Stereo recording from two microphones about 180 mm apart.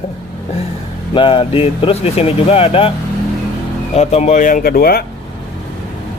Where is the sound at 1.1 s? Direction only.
30° left (ahead or behind).